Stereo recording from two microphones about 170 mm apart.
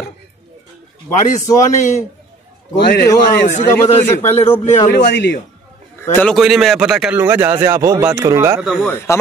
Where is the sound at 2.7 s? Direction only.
75° left (ahead or behind).